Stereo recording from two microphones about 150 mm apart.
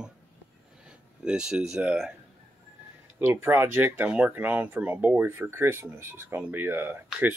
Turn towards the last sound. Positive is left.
turn(degrees=-15)  # may be behind; listen again after turning